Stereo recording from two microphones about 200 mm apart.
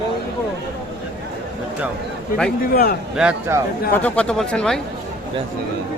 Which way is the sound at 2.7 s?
50° left (ahead or behind).